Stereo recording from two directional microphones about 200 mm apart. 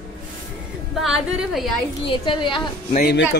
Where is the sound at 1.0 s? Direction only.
Centre (ahead or behind).